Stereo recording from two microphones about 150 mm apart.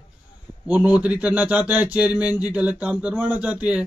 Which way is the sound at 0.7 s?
10° right (ahead or behind).